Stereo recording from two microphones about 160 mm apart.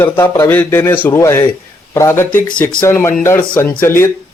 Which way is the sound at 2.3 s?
60° left (ahead or behind).